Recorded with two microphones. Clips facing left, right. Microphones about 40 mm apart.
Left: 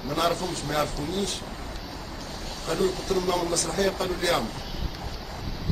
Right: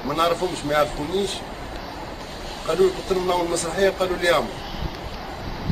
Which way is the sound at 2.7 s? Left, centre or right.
Right.